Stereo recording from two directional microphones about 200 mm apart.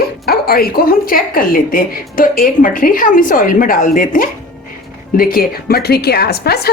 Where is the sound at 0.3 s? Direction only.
50° left (ahead or behind).